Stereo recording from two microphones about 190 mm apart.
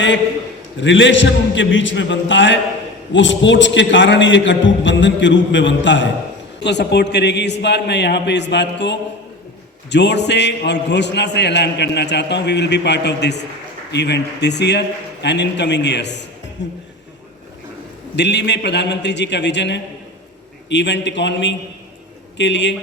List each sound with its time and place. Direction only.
0.8 s a man's voice: 75° left (ahead or behind)
18.2 s a man's voice: 65° left (ahead or behind)